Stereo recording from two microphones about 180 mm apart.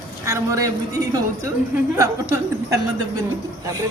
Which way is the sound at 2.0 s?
15° right (ahead or behind).